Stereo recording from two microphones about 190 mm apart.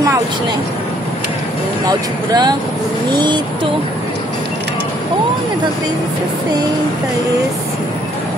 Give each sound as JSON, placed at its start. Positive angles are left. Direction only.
{"t": 1.9, "sound": "speech", "side_deg": -20}